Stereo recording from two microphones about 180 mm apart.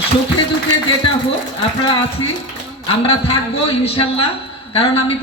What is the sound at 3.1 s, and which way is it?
A man's voice, 35° left (ahead or behind).